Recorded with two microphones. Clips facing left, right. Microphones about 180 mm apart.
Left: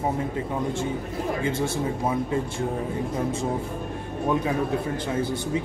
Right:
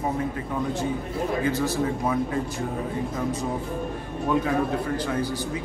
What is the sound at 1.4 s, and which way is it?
Speech, 25° left (ahead or behind).